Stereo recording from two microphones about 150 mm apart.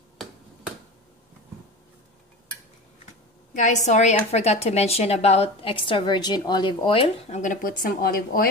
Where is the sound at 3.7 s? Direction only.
50° left (ahead or behind).